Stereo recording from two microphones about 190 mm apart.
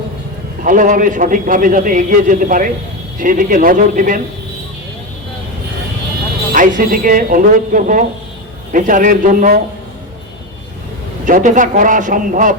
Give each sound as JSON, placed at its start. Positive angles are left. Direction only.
{"t": 0.6, "sound": "a man's voice", "side_deg": -45}
{"t": 6.5, "sound": "a man's voice", "side_deg": -45}
{"t": 11.3, "sound": "a man's voice", "side_deg": -45}